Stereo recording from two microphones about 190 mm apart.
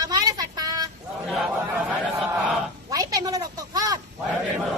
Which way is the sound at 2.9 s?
20° right (ahead or behind).